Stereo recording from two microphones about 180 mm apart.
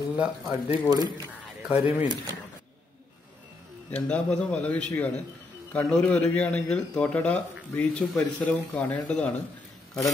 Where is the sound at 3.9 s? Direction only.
5° left (ahead or behind).